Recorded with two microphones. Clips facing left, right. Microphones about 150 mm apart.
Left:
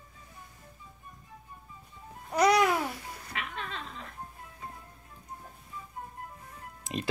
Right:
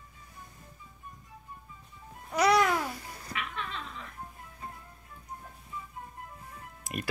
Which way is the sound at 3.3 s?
35° left (ahead or behind).